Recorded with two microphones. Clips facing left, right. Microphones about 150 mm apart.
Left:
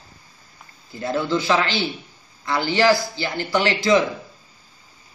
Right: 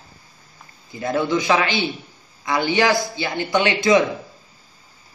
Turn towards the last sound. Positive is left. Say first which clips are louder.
# right 1 dB
turn(degrees=-20)  # may be behind; listen again after turning